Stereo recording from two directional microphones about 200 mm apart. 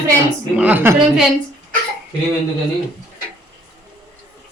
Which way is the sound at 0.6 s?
10° right (ahead or behind).